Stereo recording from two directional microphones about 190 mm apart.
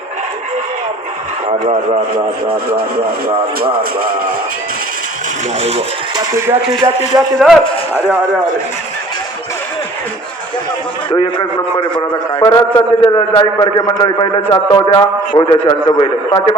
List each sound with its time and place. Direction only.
1.5 s speech: 35° right (ahead or behind)
3.2 s speech: 50° right (ahead or behind)
5.5 s speech: 30° right (ahead or behind)
6.8 s a man's voice: 15° right (ahead or behind)
7.2 s a man's voice: centre (ahead or behind)
11.1 s a man's voice: 25° left (ahead or behind)